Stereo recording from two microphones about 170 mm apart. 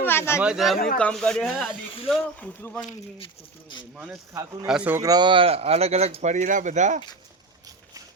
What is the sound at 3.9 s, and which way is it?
A man's voice, 5° right (ahead or behind).